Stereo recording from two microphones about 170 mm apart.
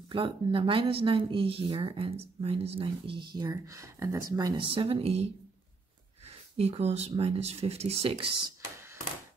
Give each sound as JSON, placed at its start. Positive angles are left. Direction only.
{"t": 0.1, "sound": "speech", "side_deg": -30}
{"t": 3.4, "sound": "speech", "side_deg": -20}
{"t": 6.5, "sound": "speech", "side_deg": -35}